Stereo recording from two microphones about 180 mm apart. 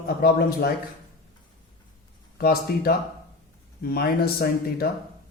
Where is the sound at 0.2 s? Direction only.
60° left (ahead or behind).